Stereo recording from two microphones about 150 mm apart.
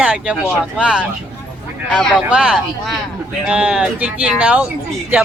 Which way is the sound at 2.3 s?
5° right (ahead or behind).